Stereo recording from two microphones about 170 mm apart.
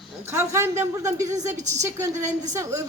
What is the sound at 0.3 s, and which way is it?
A man's voice, 15° right (ahead or behind).